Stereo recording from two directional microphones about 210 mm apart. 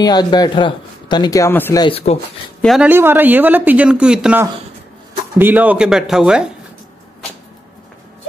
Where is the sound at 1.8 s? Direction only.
30° left (ahead or behind).